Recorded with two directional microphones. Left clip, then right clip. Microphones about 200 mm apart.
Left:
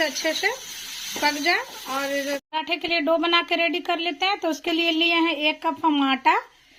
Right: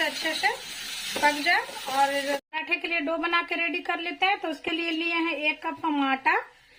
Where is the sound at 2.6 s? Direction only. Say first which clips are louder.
Left 5 dB; 45° left (ahead or behind).